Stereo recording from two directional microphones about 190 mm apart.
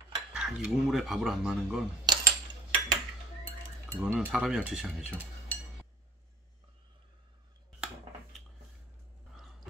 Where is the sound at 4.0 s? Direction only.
10° right (ahead or behind).